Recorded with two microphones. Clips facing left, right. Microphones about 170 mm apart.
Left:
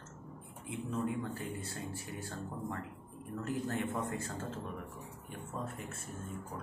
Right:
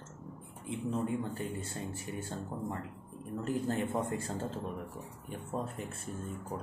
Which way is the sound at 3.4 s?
30° right (ahead or behind).